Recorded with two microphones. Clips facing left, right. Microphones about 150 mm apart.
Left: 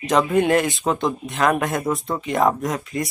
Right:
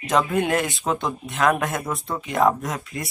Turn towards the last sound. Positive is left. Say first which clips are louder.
# left 5 dB
turn(degrees=0)  # may be behind; listen again after turning